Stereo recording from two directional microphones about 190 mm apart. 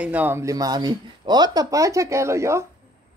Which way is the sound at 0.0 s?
10° right (ahead or behind).